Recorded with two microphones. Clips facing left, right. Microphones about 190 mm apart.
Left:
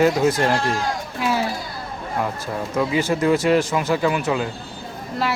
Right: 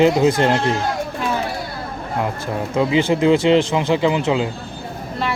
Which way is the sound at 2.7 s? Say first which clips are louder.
Right 4 dB; 20° right (ahead or behind).